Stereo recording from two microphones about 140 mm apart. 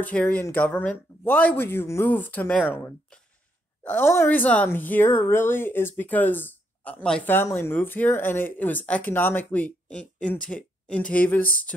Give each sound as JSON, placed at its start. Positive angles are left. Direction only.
{"t": 0.0, "sound": "speech", "side_deg": 10}